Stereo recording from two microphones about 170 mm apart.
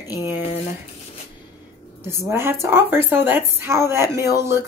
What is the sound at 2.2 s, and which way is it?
Speech, 15° right (ahead or behind).